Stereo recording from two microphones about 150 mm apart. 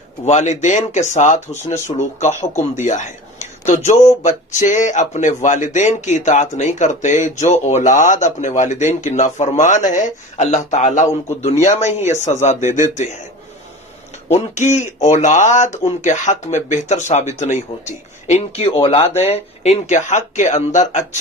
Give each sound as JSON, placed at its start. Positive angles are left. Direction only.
{"t": 0.2, "sound": "speech", "side_deg": 50}
{"t": 14.3, "sound": "speech", "side_deg": 50}